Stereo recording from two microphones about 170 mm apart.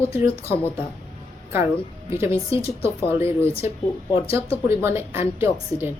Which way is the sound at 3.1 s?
15° right (ahead or behind).